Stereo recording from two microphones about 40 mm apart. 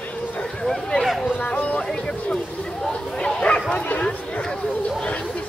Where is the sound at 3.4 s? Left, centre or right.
Left.